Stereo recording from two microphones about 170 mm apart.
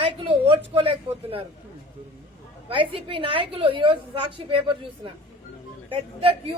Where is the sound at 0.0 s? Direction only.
30° right (ahead or behind).